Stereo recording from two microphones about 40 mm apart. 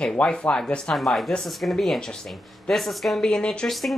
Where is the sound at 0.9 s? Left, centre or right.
Centre.